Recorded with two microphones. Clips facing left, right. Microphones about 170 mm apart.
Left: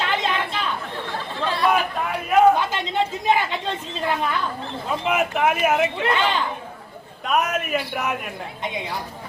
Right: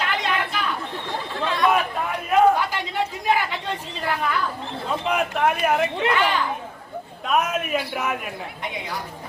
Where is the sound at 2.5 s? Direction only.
20° left (ahead or behind).